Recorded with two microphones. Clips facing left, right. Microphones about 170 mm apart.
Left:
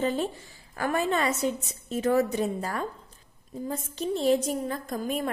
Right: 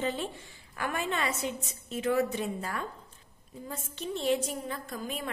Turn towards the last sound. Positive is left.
turn(degrees=45)  # may be behind; listen again after turning